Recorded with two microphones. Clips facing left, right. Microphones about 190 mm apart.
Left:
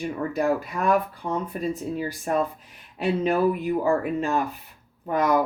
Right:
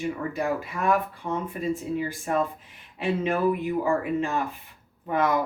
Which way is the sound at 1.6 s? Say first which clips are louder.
Left 1 dB; 45° left (ahead or behind).